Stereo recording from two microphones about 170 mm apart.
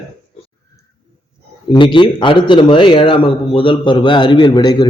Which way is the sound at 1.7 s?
30° left (ahead or behind).